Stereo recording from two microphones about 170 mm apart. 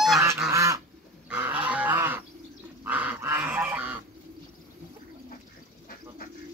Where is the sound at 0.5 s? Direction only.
20° right (ahead or behind).